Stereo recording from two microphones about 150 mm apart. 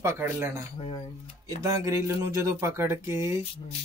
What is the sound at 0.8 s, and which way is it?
Speech, 40° left (ahead or behind).